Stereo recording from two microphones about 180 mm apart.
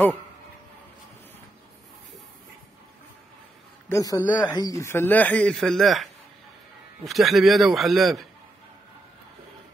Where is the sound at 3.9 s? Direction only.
20° left (ahead or behind); by 6.0 s centre (ahead or behind).